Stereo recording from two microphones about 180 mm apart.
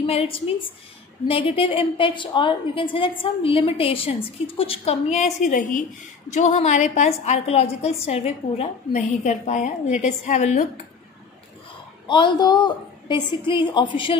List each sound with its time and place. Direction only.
0.0 s a woman's voice: 35° left (ahead or behind)
12.1 s a woman's voice: 25° left (ahead or behind)